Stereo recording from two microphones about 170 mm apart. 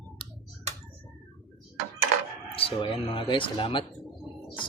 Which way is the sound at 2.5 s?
30° left (ahead or behind).